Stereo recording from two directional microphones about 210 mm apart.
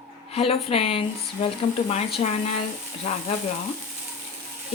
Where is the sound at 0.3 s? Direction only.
30° left (ahead or behind).